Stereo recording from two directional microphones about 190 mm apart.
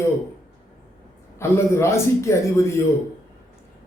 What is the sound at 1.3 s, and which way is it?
Speech, 15° left (ahead or behind).